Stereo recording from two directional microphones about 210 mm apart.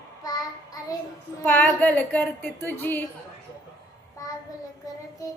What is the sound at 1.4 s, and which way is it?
A woman's voice, 10° left (ahead or behind).